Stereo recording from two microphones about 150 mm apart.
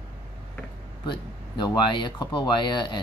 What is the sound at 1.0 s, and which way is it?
Speech, 30° left (ahead or behind).